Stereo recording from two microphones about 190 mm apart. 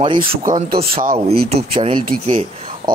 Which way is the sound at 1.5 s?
30° right (ahead or behind).